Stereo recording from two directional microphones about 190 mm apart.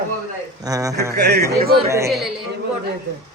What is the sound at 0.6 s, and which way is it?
Speech, 20° right (ahead or behind).